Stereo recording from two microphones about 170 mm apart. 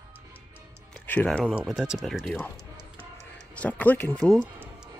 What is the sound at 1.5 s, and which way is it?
Speech, 5° right (ahead or behind).